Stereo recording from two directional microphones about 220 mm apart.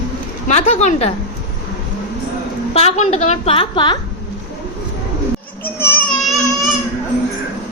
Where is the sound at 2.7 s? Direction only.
25° left (ahead or behind).